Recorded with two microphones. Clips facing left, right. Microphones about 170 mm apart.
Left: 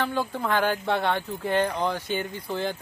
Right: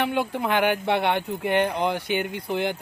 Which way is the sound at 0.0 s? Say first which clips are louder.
Right 3 dB; 20° right (ahead or behind).